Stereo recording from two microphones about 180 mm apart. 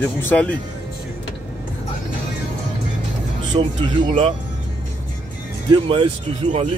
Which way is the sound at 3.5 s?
40° right (ahead or behind).